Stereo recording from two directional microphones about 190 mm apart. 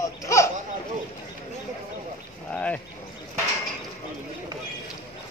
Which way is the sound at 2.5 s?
5° left (ahead or behind).